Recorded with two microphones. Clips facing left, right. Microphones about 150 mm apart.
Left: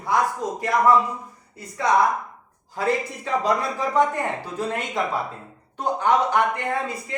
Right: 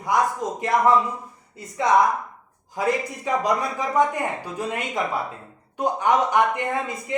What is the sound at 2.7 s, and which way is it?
A man's voice, 15° right (ahead or behind).